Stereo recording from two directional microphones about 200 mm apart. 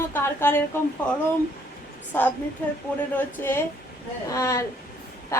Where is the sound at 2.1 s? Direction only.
10° left (ahead or behind).